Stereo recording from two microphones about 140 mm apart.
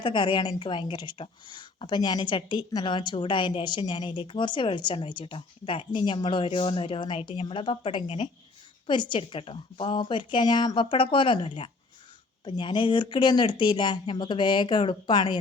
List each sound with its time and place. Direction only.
0.0 s a woman's voice: 35° left (ahead or behind)